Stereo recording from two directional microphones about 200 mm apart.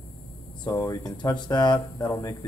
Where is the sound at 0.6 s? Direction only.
20° left (ahead or behind).